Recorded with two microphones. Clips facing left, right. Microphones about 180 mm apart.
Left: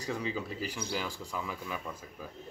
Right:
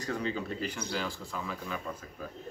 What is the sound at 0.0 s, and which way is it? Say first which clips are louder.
Speech: right 1 dB; 10° left (ahead or behind).